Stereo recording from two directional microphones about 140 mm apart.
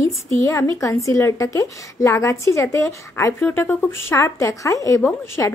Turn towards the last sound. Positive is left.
turn(degrees=20)  # may be behind; listen again after turning